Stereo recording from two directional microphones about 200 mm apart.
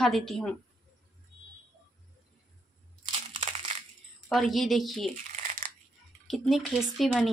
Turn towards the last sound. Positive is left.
turn(degrees=0)  # may be behind; listen again after turning